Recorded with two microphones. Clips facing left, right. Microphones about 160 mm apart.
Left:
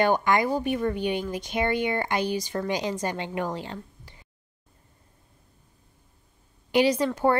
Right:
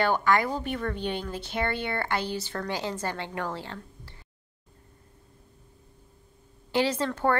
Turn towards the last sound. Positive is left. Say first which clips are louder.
# left 4 dB
turn(degrees=15)  # may be behind; listen again after turning